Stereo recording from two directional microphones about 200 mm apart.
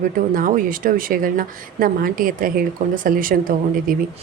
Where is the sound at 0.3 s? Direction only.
45° right (ahead or behind).